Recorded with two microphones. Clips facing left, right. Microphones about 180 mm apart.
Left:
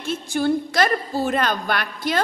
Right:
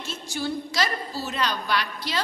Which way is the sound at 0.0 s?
55° left (ahead or behind).